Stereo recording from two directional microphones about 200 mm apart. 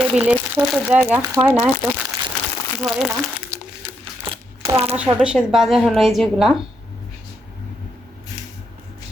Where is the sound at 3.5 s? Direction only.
15° right (ahead or behind).